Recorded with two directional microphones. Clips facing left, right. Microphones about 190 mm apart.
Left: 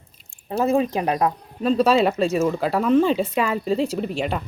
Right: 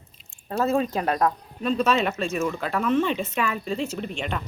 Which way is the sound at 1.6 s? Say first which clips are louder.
Left 5 dB; 35° left (ahead or behind).